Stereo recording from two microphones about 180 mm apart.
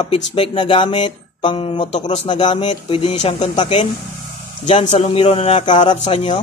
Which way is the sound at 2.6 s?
35° left (ahead or behind).